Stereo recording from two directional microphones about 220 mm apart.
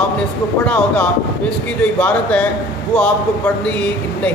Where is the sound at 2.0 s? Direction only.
5° left (ahead or behind).